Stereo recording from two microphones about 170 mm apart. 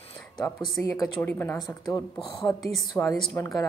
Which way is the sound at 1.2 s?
15° left (ahead or behind).